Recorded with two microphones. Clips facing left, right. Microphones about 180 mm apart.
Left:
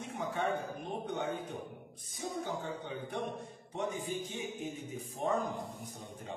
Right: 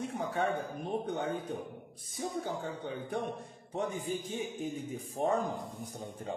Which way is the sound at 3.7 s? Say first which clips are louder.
Right 2 dB; 35° right (ahead or behind).